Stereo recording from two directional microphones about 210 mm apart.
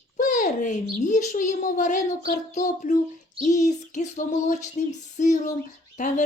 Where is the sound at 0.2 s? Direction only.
35° left (ahead or behind).